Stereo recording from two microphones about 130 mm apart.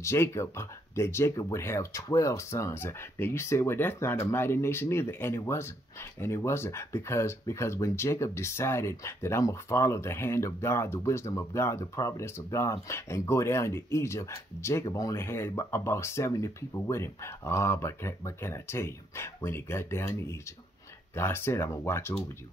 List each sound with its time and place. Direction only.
0.0 s speech: 20° left (ahead or behind)